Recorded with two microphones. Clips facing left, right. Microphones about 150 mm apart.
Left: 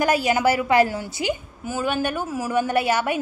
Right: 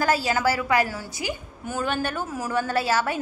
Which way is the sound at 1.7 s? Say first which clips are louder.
Left 3 dB; 10° left (ahead or behind).